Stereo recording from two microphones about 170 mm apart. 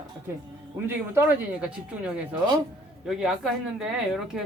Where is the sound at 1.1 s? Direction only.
10° right (ahead or behind).